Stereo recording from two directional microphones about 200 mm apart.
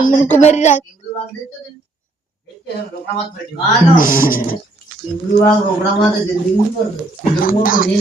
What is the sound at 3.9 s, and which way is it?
Speech, 45° left (ahead or behind).